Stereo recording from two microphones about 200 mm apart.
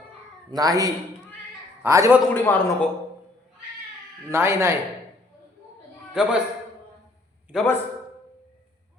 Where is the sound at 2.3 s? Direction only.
10° left (ahead or behind).